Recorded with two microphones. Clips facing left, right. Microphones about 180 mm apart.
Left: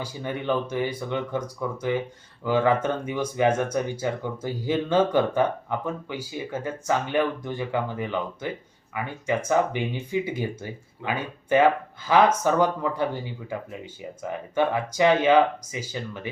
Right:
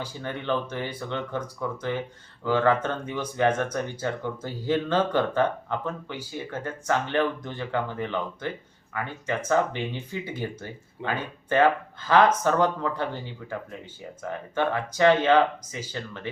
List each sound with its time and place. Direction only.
0.0 s speech: 10° left (ahead or behind)